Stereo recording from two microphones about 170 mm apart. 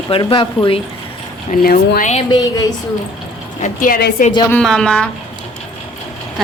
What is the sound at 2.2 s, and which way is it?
Speech, 25° left (ahead or behind).